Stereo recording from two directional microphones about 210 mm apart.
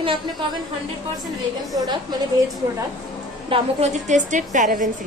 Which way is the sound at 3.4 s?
25° right (ahead or behind).